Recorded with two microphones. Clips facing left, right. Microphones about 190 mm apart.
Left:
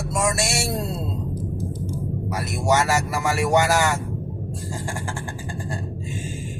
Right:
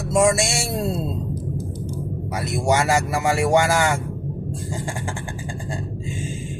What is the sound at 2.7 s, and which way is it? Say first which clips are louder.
Speech: right 1 dB; 25° right (ahead or behind).